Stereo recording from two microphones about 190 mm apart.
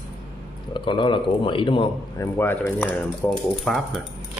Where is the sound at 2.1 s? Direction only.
10° left (ahead or behind).